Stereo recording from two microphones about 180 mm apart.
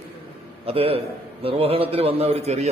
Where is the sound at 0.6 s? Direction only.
35° right (ahead or behind).